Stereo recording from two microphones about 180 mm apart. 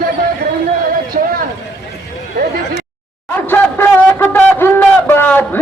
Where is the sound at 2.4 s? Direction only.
60° right (ahead or behind).